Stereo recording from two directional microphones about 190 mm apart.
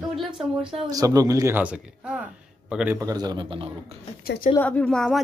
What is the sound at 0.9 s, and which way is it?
A man's voice, 20° right (ahead or behind).